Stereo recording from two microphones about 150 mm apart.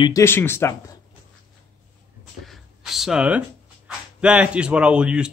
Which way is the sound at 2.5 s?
Centre (ahead or behind).